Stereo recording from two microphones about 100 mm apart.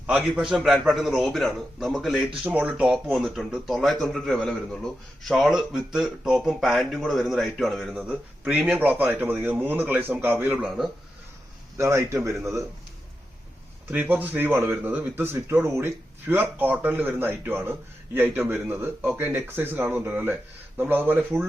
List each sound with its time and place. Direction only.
0.1 s a man's voice: 5° right (ahead or behind)
7.9 s speech: 15° right (ahead or behind)
11.8 s speech: 30° right (ahead or behind)
13.9 s speech: 15° right (ahead or behind)